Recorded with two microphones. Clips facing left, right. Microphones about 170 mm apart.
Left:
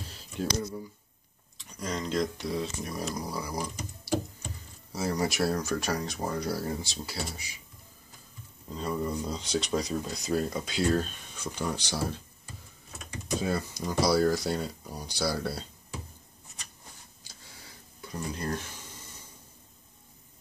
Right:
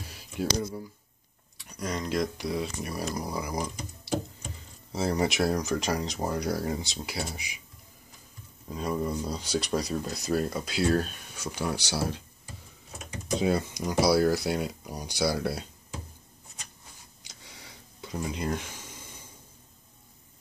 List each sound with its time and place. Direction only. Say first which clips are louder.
0.0 s a sound: right 2 dB; 10° right (ahead or behind)
0.6 s speech: right 2 dB; 5° right (ahead or behind)
4.9 s speech: right 2 dB; 25° right (ahead or behind)
8.6 s speech: right 2 dB; 10° right (ahead or behind)
13.4 s speech: right 5 dB; 20° right (ahead or behind)
17.2 s a sound: right 6 dB; 20° right (ahead or behind)
18.1 s speech: right 2 dB; 15° right (ahead or behind)